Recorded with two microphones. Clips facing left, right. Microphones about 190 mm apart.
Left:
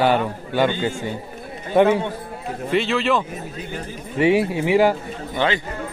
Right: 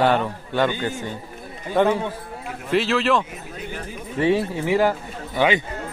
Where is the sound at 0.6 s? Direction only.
20° left (ahead or behind).